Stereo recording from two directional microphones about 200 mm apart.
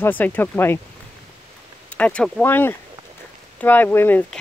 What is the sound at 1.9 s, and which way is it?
Speech, 5° left (ahead or behind).